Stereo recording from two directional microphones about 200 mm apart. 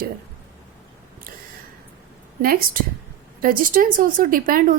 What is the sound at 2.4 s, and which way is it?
Speech, 45° right (ahead or behind).